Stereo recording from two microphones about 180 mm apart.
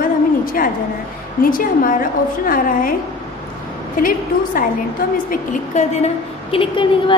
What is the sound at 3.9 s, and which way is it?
A woman's voice, 50° left (ahead or behind).